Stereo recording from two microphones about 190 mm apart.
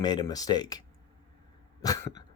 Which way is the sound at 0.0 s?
20° left (ahead or behind).